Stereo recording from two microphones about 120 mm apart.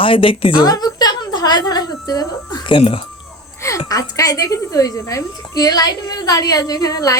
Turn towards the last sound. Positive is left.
turn(degrees=30)  # may be behind; listen again after turning